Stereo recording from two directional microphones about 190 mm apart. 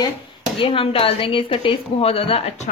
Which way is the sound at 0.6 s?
25° left (ahead or behind).